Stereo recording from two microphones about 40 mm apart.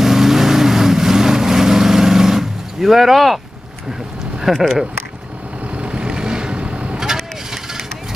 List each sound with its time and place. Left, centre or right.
0.0 s vehicle: centre
4.5 s speech: centre
5.8 s vehicle: right